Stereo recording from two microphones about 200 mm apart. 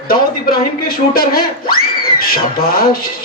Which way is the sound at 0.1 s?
50° left (ahead or behind).